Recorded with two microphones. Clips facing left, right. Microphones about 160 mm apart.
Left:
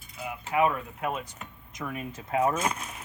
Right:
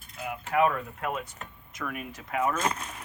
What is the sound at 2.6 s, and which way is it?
Speech, 10° left (ahead or behind).